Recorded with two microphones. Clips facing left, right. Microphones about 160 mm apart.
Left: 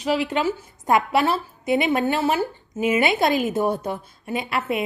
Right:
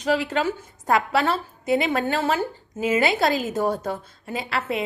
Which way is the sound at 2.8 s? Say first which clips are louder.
Left 1 dB; 35° right (ahead or behind).